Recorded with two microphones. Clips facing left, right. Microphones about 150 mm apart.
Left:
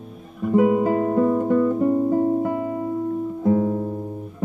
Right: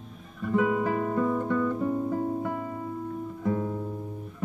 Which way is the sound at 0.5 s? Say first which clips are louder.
Left 8 dB; 35° left (ahead or behind).